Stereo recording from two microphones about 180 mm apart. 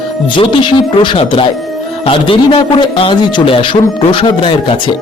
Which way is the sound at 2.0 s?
30° left (ahead or behind).